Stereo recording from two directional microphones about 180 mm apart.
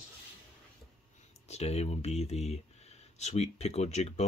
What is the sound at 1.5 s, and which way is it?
Speech, 35° left (ahead or behind).